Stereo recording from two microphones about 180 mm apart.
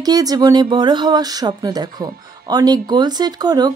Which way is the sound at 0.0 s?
20° right (ahead or behind).